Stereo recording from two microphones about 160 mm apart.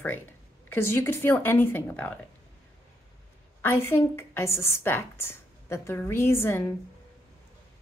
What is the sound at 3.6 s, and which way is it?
A woman's voice, 15° left (ahead or behind).